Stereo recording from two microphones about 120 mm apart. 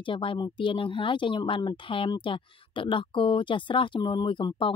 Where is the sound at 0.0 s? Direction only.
45° left (ahead or behind).